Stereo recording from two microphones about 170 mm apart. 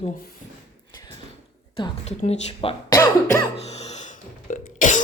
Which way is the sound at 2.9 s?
20° left (ahead or behind).